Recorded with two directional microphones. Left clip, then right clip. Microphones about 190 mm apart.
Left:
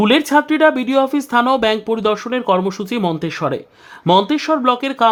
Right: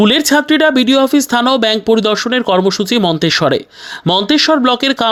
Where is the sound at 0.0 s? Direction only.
20° right (ahead or behind).